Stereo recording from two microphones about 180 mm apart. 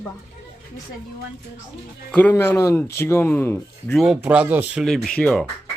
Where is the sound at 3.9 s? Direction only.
Centre (ahead or behind).